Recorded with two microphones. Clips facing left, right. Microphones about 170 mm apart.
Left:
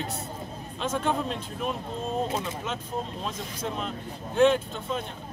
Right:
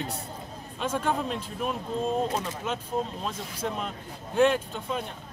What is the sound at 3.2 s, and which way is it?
Speech, 5° right (ahead or behind).